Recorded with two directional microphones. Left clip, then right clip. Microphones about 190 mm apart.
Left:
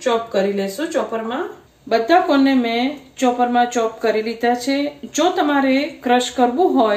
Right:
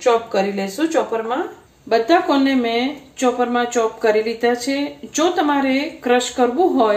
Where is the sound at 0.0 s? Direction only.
30° right (ahead or behind).